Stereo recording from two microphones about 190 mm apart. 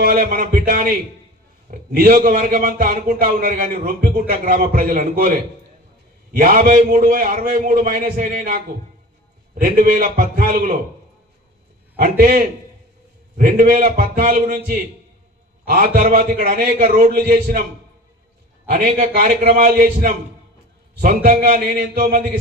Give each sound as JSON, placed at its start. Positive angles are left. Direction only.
{"t": 0.0, "sound": "a man's voice", "side_deg": -50}
{"t": 12.0, "sound": "a man's voice", "side_deg": -50}
{"t": 18.7, "sound": "a man's voice", "side_deg": -50}